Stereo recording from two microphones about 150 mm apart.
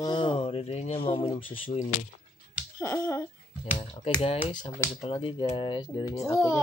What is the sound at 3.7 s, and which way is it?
A child's voice, 35° left (ahead or behind).